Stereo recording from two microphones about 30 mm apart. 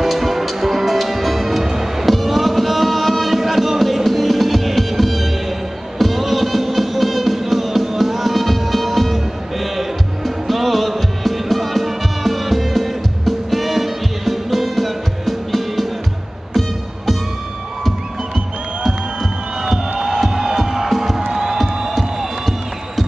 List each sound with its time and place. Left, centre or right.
0.0 s music: centre
19.9 s music: centre
21.3 s music: centre